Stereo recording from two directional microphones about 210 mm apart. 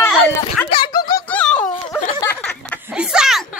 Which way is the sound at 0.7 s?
20° left (ahead or behind).